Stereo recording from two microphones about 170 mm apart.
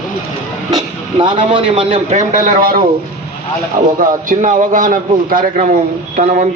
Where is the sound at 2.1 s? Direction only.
50° right (ahead or behind).